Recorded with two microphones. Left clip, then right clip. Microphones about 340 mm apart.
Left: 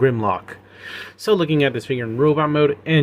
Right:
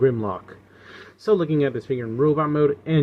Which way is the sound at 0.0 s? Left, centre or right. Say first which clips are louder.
Left 3 dB; left.